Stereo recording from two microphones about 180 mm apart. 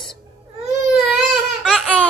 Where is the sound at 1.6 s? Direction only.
Centre (ahead or behind).